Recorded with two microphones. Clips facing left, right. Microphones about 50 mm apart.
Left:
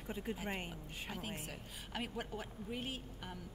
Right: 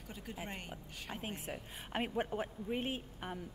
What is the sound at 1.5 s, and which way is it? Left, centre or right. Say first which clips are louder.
A woman's voice: right 5 dB; right.